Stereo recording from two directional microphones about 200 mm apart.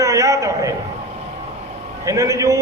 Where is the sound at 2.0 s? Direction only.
15° right (ahead or behind).